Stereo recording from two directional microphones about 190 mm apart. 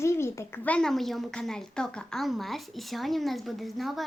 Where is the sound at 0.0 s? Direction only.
15° left (ahead or behind).